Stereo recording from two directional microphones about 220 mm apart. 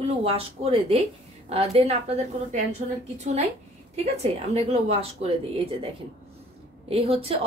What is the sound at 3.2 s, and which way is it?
Speech, 30° right (ahead or behind).